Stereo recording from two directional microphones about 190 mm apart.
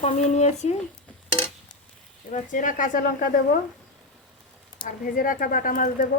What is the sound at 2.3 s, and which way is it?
A woman's voice, 40° left (ahead or behind).